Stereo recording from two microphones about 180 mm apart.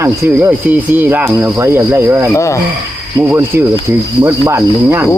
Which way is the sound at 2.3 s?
15° left (ahead or behind).